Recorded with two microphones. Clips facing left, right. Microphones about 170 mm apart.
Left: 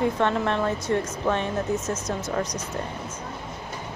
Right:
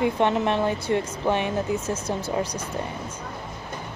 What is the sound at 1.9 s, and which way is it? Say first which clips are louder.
Speech: right 1 dB; 30° right (ahead or behind).